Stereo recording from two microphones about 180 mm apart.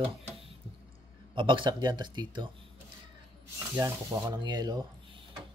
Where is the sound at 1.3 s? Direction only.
25° right (ahead or behind).